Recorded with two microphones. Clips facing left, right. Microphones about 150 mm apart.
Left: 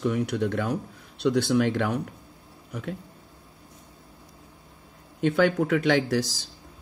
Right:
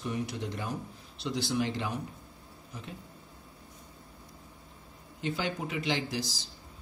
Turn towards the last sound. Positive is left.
turn(degrees=70)  # may be behind; listen again after turning